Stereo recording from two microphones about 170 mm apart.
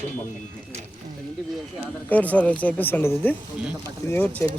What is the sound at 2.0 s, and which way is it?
Speech, 10° left (ahead or behind).